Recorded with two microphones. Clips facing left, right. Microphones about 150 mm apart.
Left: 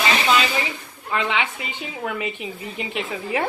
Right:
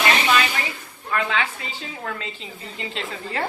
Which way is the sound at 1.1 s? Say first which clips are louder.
Left 1 dB; 20° left (ahead or behind).